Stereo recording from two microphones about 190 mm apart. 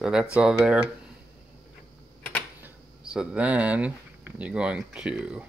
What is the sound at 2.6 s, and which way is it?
Speech, 5° right (ahead or behind).